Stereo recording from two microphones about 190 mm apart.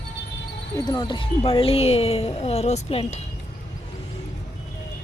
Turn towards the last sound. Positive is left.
turn(degrees=35)  # may be behind; listen again after turning